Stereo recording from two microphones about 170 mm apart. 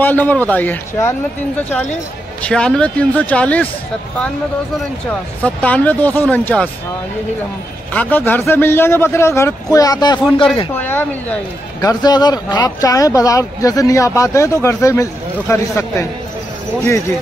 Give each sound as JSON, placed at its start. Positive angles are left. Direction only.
{"t": 0.0, "sound": "a man's voice", "side_deg": 10}
{"t": 5.4, "sound": "a man's voice", "side_deg": 10}
{"t": 7.9, "sound": "a man's voice", "side_deg": 10}
{"t": 10.7, "sound": "a man's voice", "side_deg": 10}
{"t": 11.8, "sound": "speech", "side_deg": 25}